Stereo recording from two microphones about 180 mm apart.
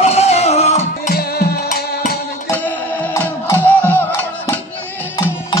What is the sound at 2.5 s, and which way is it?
Music, 10° left (ahead or behind).